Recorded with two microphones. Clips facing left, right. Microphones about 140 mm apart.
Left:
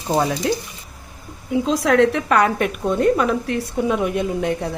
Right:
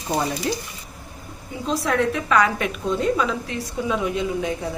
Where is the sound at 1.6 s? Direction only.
90° left.